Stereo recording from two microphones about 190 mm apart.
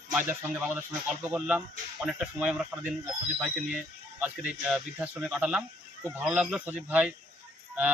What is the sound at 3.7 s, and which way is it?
Speech, 5° right (ahead or behind).